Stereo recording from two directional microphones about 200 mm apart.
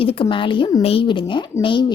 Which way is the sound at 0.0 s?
25° left (ahead or behind).